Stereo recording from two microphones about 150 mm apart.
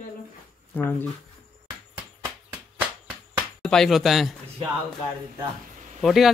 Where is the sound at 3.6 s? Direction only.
Centre (ahead or behind).